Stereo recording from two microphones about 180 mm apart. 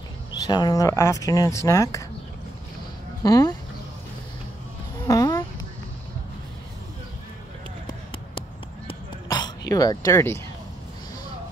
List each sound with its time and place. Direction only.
0.3 s speech: 25° left (ahead or behind)
3.3 s speech: 20° left (ahead or behind)
4.9 s music: 20° left (ahead or behind)
8.4 s a sound: 25° left (ahead or behind)
9.7 s speech: 20° left (ahead or behind)